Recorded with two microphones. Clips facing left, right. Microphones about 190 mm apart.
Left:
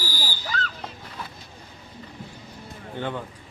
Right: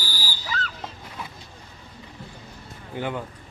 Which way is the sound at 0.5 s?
40° right (ahead or behind).